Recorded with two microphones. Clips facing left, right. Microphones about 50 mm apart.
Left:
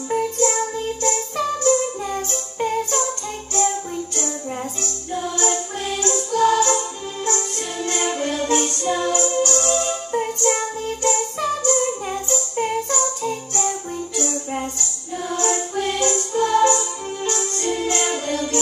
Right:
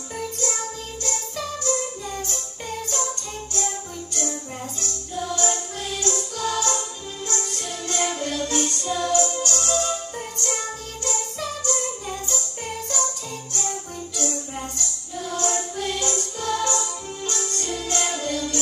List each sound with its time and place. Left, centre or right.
0.1 s music: left